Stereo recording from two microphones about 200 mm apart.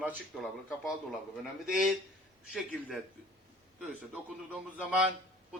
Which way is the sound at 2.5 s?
5° right (ahead or behind).